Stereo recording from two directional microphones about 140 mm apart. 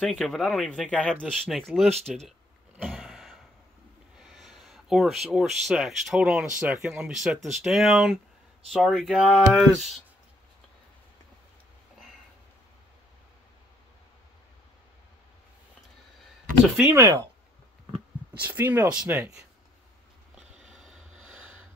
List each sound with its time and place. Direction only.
0.0 s speech: 5° left (ahead or behind)
2.8 s gasp: centre (ahead or behind)
4.2 s speech: centre (ahead or behind)
16.6 s speech: centre (ahead or behind)
16.9 s speech: 25° right (ahead or behind)
17.9 s speech: 10° right (ahead or behind)
20.7 s a sound: centre (ahead or behind)